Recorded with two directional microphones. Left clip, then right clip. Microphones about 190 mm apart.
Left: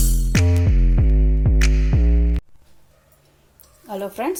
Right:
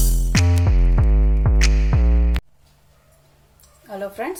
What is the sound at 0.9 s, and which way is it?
Music, 40° right (ahead or behind).